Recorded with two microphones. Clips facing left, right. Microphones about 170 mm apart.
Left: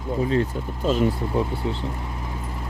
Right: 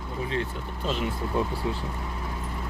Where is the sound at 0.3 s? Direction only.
40° left (ahead or behind).